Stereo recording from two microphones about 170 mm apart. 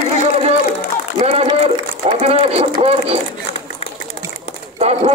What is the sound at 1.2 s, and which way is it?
Speech, 40° right (ahead or behind).